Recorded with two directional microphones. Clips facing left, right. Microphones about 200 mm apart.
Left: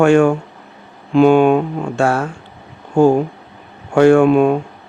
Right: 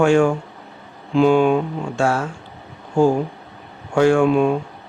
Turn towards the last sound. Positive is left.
turn(degrees=60)  # may be behind; listen again after turning